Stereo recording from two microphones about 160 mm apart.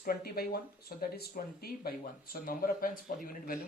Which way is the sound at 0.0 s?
70° left (ahead or behind).